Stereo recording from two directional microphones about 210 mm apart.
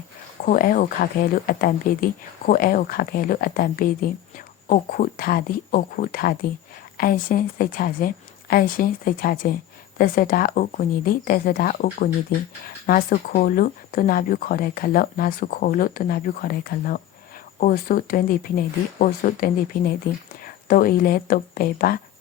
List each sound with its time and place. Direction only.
0.4 s speech: 40° left (ahead or behind)